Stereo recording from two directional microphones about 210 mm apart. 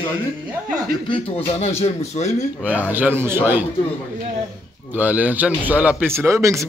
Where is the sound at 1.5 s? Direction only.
30° left (ahead or behind).